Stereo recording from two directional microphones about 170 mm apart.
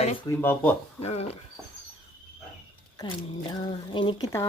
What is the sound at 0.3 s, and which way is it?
Speech, 10° left (ahead or behind).